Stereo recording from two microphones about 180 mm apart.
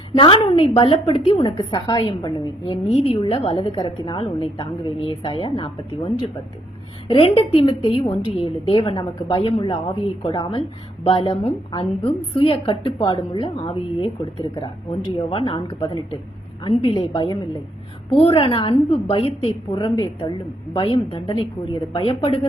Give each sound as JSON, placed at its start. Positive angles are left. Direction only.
{"t": 0.2, "sound": "a woman's voice", "side_deg": 25}